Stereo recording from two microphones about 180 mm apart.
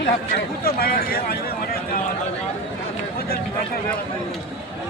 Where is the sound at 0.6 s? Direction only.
55° left (ahead or behind).